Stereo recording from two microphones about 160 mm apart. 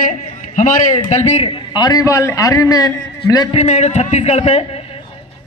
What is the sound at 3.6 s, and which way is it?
A man's voice, 45° left (ahead or behind).